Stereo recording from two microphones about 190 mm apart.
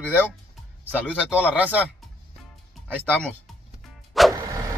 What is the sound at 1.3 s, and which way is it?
Speech, 5° right (ahead or behind).